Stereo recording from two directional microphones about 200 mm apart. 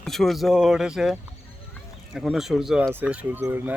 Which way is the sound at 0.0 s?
Centre (ahead or behind).